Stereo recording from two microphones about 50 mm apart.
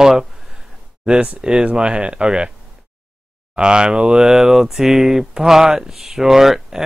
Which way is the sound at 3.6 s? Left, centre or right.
Centre.